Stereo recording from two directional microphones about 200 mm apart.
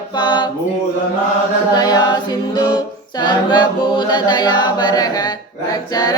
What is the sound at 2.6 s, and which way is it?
A capella, 20° left (ahead or behind).